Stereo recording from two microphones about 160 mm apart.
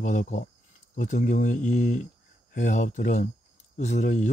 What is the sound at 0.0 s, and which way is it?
Speech, 50° left (ahead or behind).